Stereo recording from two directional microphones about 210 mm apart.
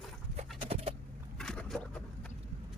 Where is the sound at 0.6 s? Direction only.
30° right (ahead or behind).